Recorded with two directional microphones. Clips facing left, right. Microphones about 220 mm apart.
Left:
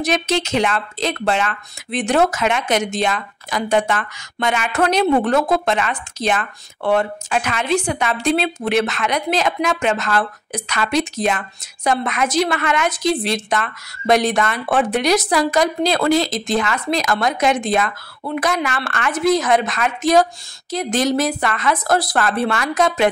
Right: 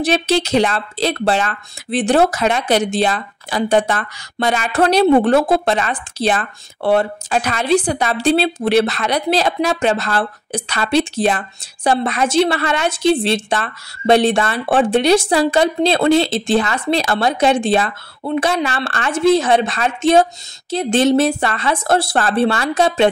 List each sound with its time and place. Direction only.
0.0 s a woman's voice: 30° right (ahead or behind)